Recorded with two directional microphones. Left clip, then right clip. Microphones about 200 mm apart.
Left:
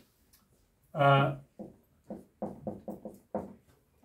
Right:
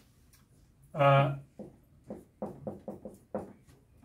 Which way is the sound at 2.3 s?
20° right (ahead or behind).